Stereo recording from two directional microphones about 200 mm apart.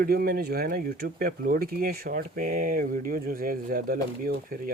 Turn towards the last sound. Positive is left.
turn(degrees=-45)  # may be behind; listen again after turning